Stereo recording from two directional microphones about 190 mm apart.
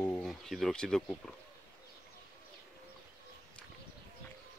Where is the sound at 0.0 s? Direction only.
5° left (ahead or behind).